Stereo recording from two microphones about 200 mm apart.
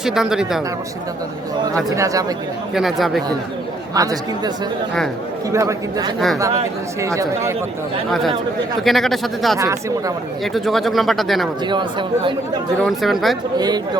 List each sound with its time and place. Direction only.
0.0 s speech: centre (ahead or behind)
1.7 s speech: 15° right (ahead or behind)
2.7 s speech: centre (ahead or behind)
3.9 s speech: 20° right (ahead or behind)
8.8 s speech: centre (ahead or behind)
11.7 s speech: 25° right (ahead or behind)
12.8 s speech: centre (ahead or behind)
13.6 s speech: 20° right (ahead or behind)